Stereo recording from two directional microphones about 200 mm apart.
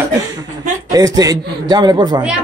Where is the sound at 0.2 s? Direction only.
20° right (ahead or behind).